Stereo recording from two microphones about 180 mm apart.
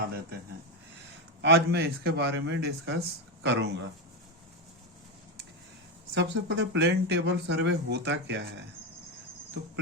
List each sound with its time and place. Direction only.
1.4 s speech: 70° right (ahead or behind)
6.1 s speech: 85° right